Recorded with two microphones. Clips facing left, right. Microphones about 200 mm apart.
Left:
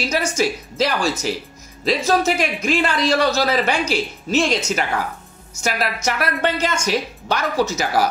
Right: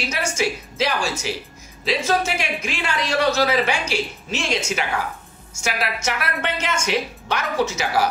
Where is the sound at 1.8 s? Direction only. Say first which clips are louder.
Left 4 dB; 40° left (ahead or behind).